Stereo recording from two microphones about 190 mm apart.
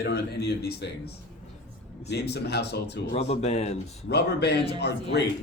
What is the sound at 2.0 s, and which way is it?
A man's voice, 60° left (ahead or behind).